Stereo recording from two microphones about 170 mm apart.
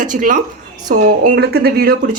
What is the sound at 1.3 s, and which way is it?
Speech, 70° right (ahead or behind).